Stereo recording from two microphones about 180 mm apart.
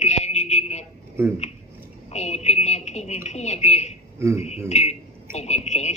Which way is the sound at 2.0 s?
35° left (ahead or behind).